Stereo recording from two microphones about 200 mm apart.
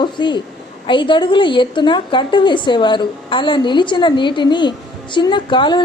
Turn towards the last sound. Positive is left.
turn(degrees=25)  # may be behind; listen again after turning